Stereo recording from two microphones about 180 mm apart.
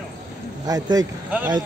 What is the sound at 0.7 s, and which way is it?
Speech, 20° right (ahead or behind).